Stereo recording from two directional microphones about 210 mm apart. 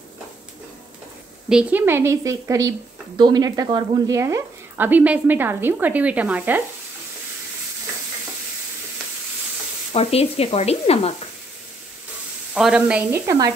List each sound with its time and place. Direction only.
1.5 s speech: 5° right (ahead or behind)
9.9 s speech: 30° left (ahead or behind)
12.5 s speech: 5° right (ahead or behind)